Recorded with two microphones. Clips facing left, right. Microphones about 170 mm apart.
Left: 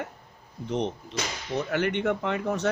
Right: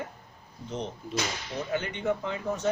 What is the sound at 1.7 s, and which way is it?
Speech, 70° left (ahead or behind).